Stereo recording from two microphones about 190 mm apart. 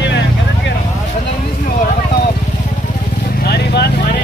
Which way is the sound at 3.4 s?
55° left (ahead or behind).